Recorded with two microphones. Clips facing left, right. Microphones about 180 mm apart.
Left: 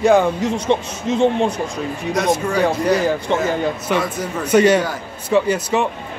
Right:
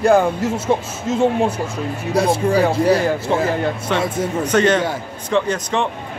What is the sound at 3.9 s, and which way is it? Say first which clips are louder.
Speech: right 1 dB; 25° right (ahead or behind).